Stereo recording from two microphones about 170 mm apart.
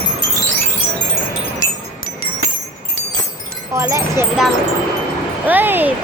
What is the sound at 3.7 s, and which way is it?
Speech, 15° right (ahead or behind).